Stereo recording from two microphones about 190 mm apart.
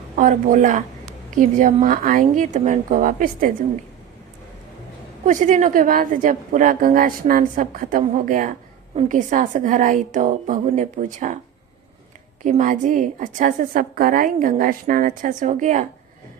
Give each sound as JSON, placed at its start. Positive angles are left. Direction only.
{"t": 0.2, "sound": "a woman's voice", "side_deg": -45}
{"t": 5.2, "sound": "a woman's voice", "side_deg": -40}
{"t": 12.5, "sound": "a woman's voice", "side_deg": -40}